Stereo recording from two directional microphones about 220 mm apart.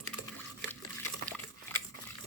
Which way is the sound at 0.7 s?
10° left (ahead or behind).